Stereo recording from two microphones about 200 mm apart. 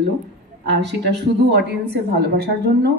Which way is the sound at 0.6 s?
60° right (ahead or behind).